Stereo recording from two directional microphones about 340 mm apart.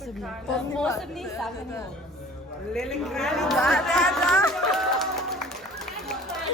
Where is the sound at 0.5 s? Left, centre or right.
Centre.